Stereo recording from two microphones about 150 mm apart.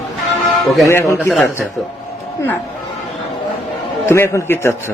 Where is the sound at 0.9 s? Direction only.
20° left (ahead or behind).